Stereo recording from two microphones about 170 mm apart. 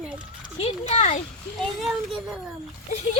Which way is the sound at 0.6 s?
40° left (ahead or behind).